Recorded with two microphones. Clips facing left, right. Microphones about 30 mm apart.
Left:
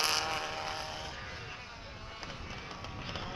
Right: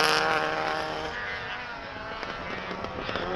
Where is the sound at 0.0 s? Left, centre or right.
Right.